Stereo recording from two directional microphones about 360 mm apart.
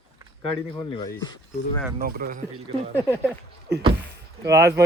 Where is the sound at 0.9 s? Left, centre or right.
Centre.